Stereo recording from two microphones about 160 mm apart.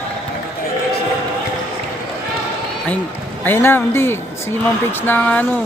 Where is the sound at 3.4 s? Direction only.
15° left (ahead or behind).